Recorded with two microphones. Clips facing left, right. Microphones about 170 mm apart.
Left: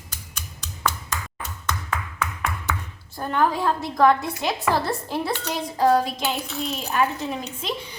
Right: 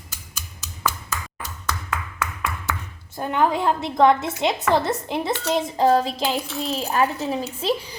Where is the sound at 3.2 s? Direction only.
20° right (ahead or behind).